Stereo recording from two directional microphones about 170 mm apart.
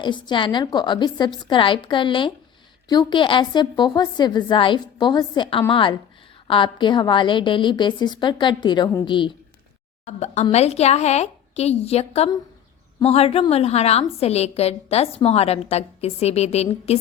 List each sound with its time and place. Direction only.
0.0 s a woman's voice: 25° left (ahead or behind)
10.1 s a woman's voice: 40° left (ahead or behind)